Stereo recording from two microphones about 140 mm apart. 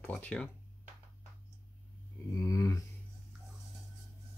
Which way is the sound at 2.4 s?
25° left (ahead or behind).